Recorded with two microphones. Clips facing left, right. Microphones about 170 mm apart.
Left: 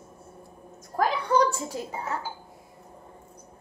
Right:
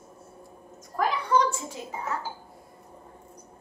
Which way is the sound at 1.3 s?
35° left (ahead or behind).